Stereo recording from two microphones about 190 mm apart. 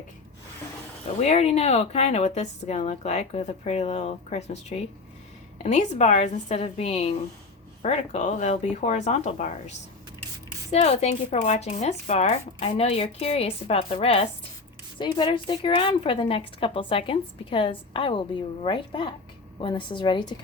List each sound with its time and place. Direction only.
1.2 s a woman's voice: 35° left (ahead or behind)